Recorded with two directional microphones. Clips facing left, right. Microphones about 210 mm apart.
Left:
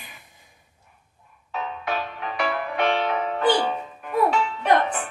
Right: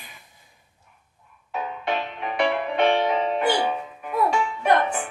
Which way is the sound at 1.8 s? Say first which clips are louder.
Right 3 dB; 25° right (ahead or behind).